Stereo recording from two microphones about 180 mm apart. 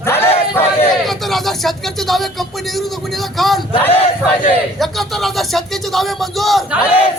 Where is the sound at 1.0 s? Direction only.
Centre (ahead or behind).